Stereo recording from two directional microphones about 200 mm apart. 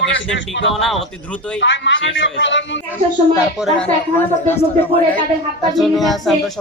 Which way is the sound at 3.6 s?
5° left (ahead or behind).